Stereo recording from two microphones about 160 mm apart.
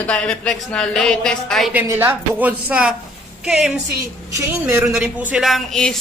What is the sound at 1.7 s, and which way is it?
Speech, 10° right (ahead or behind).